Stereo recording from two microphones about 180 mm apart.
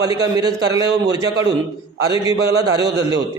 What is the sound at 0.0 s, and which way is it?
A man's voice, 20° right (ahead or behind).